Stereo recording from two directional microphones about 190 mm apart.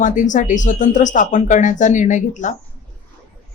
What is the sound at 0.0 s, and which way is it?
Speech, 40° left (ahead or behind).